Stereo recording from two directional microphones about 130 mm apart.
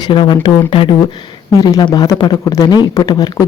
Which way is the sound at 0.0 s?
35° left (ahead or behind).